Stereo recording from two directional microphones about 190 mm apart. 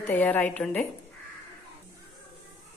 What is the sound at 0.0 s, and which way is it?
Speech, 10° left (ahead or behind).